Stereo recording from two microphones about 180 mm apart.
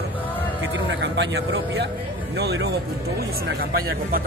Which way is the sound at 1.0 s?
75° right (ahead or behind).